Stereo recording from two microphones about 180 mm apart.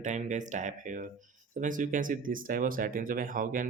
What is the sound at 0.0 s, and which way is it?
Speech, 45° right (ahead or behind).